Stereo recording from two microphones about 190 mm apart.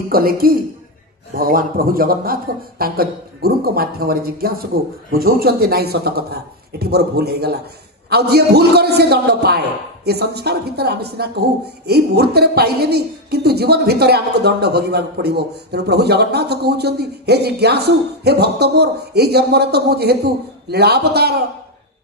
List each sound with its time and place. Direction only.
0.1 s a man's voice: 50° right (ahead or behind)